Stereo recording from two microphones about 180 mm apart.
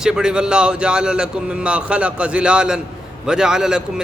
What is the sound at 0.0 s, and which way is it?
A man's voice, 5° right (ahead or behind).